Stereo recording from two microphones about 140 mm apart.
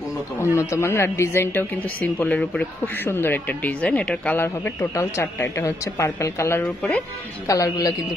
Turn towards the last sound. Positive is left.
turn(degrees=25)  # may be behind; listen again after turning